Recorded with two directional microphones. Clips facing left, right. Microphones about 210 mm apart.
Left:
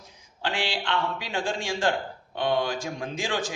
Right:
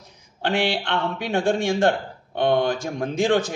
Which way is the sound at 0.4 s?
60° right (ahead or behind).